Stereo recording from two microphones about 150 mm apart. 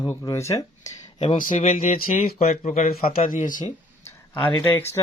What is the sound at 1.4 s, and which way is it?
Speech, 60° left (ahead or behind).